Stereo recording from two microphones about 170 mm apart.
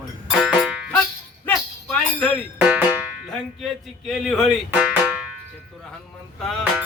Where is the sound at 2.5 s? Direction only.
10° right (ahead or behind).